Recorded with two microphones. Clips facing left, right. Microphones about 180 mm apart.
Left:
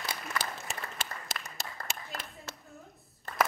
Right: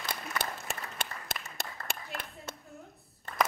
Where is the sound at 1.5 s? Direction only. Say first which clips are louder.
Right 1 dB; 60° right (ahead or behind).